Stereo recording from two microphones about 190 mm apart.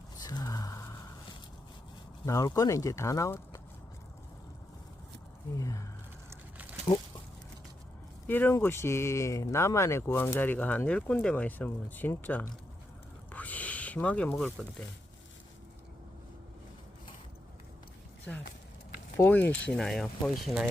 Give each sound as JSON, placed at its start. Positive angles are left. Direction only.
{"t": 0.2, "sound": "a sound", "side_deg": 20}
{"t": 2.2, "sound": "speech", "side_deg": 15}
{"t": 5.5, "sound": "speech", "side_deg": 15}
{"t": 8.3, "sound": "speech", "side_deg": 10}
{"t": 13.3, "sound": "a sound", "side_deg": 10}
{"t": 18.3, "sound": "speech", "side_deg": 10}